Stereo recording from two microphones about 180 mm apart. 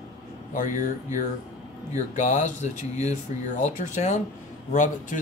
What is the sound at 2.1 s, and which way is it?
Speech, 40° left (ahead or behind).